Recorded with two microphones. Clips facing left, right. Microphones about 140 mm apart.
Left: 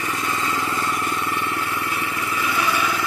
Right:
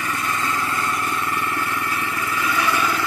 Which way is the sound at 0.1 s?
15° left (ahead or behind).